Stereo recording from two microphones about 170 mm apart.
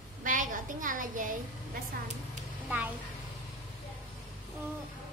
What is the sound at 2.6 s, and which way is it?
Speech, 10° right (ahead or behind).